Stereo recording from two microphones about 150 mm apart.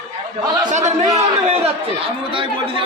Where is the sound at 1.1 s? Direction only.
45° right (ahead or behind).